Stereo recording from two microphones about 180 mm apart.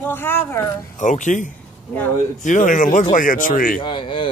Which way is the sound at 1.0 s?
45° left (ahead or behind).